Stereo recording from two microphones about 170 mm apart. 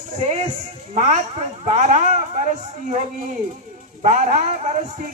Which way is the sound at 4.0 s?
45° right (ahead or behind).